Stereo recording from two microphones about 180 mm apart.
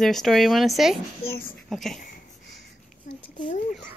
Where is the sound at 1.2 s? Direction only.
55° left (ahead or behind).